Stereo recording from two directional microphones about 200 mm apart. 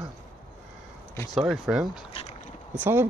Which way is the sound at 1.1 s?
10° left (ahead or behind).